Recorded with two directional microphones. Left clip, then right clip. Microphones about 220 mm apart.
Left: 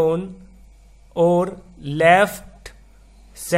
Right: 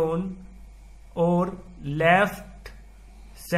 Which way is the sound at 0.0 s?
50° left (ahead or behind).